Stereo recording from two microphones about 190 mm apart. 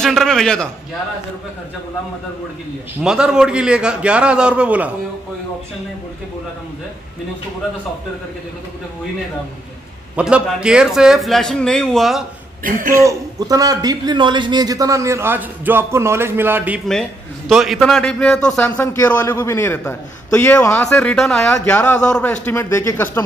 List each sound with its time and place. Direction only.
0.0 s a man's voice: centre (ahead or behind)
3.0 s a man's voice: 5° right (ahead or behind)
10.1 s a man's voice: 5° right (ahead or behind)
12.6 s speech: 50° right (ahead or behind)
13.0 s a man's voice: 20° right (ahead or behind); by 23.0 s 15° left (ahead or behind)